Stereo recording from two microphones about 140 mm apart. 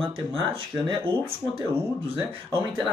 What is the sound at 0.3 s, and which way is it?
Speech, 40° right (ahead or behind).